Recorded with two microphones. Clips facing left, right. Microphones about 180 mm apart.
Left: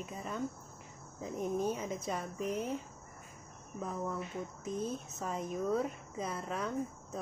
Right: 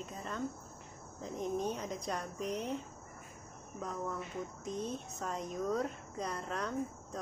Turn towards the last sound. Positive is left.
turn(degrees=5)  # may be behind; listen again after turning